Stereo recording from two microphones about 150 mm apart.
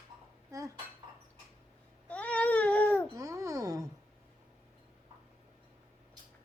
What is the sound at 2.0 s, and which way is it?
Baby cry, 10° left (ahead or behind).